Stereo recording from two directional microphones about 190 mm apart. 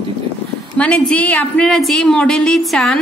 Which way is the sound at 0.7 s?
5° left (ahead or behind).